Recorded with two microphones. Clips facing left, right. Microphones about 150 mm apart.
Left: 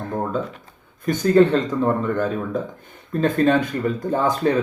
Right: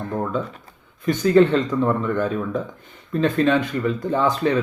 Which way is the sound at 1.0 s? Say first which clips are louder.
Even; 45° left (ahead or behind).